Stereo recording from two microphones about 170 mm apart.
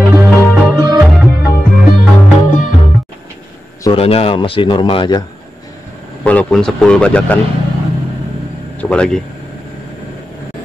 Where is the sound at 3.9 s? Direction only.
35° left (ahead or behind).